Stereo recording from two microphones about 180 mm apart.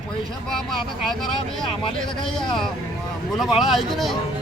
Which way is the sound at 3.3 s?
Centre (ahead or behind).